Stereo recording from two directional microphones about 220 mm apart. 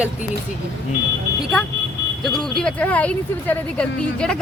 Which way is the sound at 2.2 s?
Centre (ahead or behind).